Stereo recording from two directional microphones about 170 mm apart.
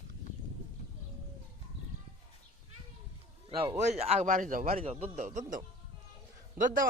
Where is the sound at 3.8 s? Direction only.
40° right (ahead or behind).